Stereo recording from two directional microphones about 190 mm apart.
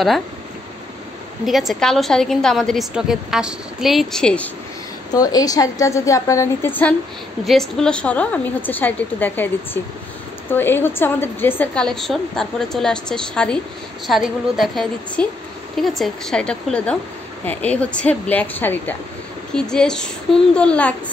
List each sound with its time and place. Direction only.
1.4 s a woman's voice: centre (ahead or behind)
5.1 s a woman's voice: 20° left (ahead or behind)
10.5 s a woman's voice: 10° left (ahead or behind)